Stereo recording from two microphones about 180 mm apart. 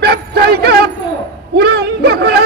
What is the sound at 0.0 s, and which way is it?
Music, 65° right (ahead or behind).